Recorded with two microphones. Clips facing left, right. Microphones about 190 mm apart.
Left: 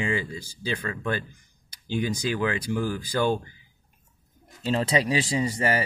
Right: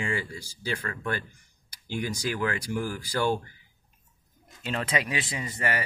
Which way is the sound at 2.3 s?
25° left (ahead or behind).